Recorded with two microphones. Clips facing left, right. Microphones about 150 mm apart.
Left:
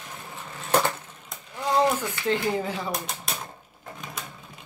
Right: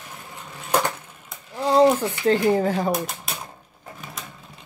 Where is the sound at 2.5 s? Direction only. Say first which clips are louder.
Right 8 dB; 45° right (ahead or behind).